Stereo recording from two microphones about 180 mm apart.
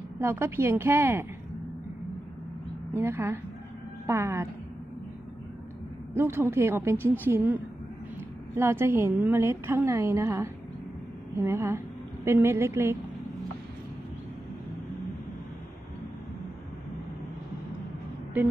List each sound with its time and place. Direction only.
0.2 s a woman's voice: 15° right (ahead or behind)
2.9 s a woman's voice: 15° right (ahead or behind)
6.1 s a woman's voice: 15° right (ahead or behind)
8.5 s a woman's voice: 15° right (ahead or behind)